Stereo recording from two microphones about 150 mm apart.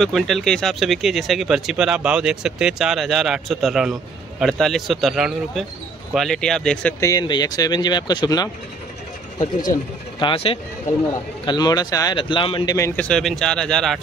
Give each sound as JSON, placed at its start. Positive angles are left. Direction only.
{"t": 0.0, "sound": "speech", "side_deg": 0}
{"t": 7.0, "sound": "speech", "side_deg": 25}
{"t": 10.2, "sound": "speech", "side_deg": 40}
{"t": 11.4, "sound": "speech", "side_deg": 30}
{"t": 12.7, "sound": "speech", "side_deg": 20}
{"t": 13.0, "sound": "speech", "side_deg": 5}